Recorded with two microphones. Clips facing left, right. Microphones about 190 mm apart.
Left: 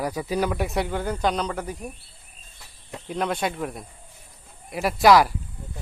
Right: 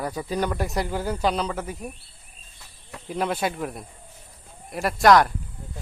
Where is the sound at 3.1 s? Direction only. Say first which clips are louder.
Even; 5° right (ahead or behind).